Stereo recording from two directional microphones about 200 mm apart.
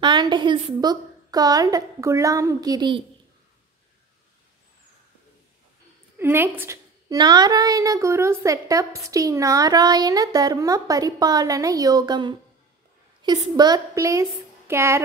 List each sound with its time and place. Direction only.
0.0 s a woman's voice: 20° right (ahead or behind)
6.1 s a woman's voice: 10° right (ahead or behind)